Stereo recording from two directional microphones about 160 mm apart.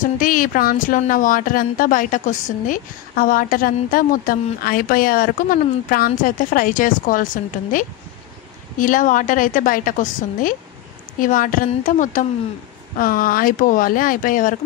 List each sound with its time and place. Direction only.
0.0 s speech: 60° left (ahead or behind)
8.7 s speech: 60° left (ahead or behind)